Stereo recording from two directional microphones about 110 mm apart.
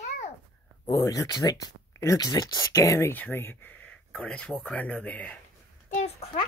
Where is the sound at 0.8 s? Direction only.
30° left (ahead or behind); by 5.4 s 15° left (ahead or behind).